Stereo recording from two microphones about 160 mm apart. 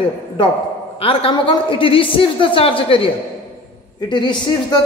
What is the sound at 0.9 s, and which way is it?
A man's voice, 35° left (ahead or behind).